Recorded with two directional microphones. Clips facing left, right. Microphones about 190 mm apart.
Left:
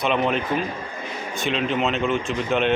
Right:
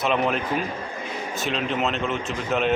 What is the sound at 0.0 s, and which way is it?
Speech, centre (ahead or behind).